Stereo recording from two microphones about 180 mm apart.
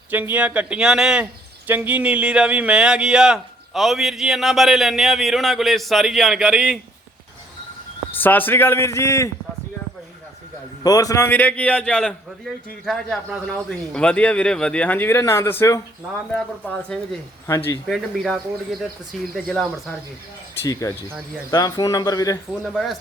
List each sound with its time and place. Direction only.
0.1 s speech: 10° right (ahead or behind)
8.1 s speech: 10° left (ahead or behind)
10.8 s speech: 20° left (ahead or behind)
17.8 s speech: centre (ahead or behind)
20.8 s speech: 20° left (ahead or behind)
22.6 s speech: centre (ahead or behind)